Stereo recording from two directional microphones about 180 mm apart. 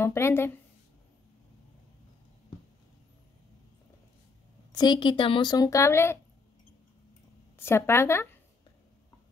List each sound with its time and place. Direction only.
0.0 s speech: 15° left (ahead or behind)
4.7 s a woman's voice: 25° left (ahead or behind)
7.5 s speech: 15° left (ahead or behind)